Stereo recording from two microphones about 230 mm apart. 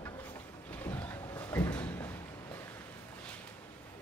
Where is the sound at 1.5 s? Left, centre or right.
Centre.